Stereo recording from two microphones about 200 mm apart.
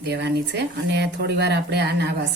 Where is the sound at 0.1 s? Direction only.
60° right (ahead or behind).